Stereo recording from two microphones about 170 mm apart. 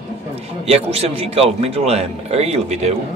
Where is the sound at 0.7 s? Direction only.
35° right (ahead or behind).